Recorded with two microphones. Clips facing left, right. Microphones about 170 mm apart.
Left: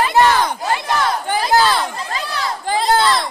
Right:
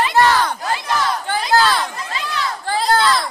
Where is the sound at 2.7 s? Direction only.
15° left (ahead or behind).